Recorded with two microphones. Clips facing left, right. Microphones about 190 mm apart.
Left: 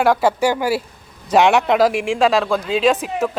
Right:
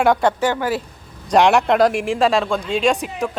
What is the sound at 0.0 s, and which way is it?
A man's voice, 5° left (ahead or behind).